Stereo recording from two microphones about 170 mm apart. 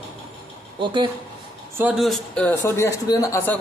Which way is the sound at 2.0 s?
Centre (ahead or behind).